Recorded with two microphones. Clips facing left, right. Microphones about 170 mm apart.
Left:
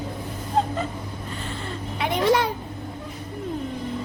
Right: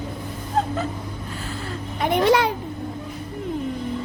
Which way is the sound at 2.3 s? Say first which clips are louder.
Right 1 dB; 75° right (ahead or behind).